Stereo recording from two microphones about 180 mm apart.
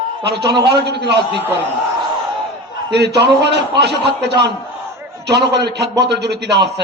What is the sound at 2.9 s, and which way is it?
A man's voice, 70° right (ahead or behind).